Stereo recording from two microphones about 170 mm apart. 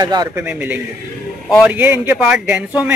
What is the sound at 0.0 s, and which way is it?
Speech, 25° right (ahead or behind).